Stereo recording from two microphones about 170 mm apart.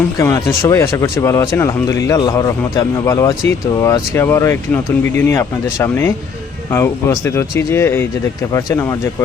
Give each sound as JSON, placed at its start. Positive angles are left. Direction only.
{"t": 0.2, "sound": "speech", "side_deg": 20}